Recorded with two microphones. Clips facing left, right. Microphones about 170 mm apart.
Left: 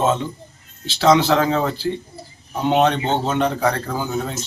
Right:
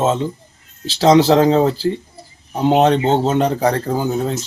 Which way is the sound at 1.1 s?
35° right (ahead or behind).